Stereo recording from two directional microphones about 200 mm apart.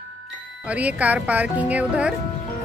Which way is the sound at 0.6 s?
5° right (ahead or behind).